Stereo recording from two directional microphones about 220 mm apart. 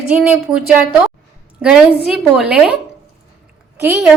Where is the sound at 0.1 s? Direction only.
5° right (ahead or behind).